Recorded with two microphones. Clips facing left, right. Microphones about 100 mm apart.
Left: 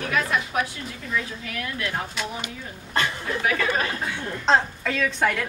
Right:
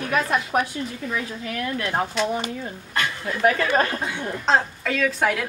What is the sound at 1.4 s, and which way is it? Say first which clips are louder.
Speech: right 4 dB; 35° right (ahead or behind).